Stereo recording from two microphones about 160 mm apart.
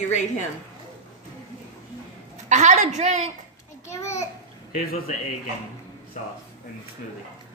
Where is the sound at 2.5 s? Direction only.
50° right (ahead or behind).